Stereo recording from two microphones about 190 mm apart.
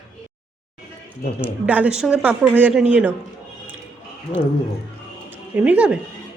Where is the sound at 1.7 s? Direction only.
5° right (ahead or behind).